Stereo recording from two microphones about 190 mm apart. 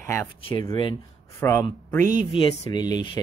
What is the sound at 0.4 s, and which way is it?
Speech, 30° left (ahead or behind).